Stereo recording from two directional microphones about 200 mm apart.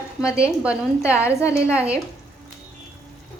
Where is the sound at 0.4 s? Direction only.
5° right (ahead or behind).